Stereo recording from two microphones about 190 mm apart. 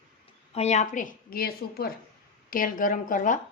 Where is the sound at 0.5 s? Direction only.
35° left (ahead or behind).